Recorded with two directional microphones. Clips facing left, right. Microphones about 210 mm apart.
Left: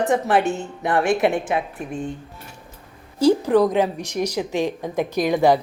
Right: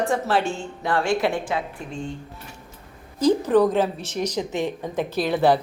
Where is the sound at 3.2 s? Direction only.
10° left (ahead or behind).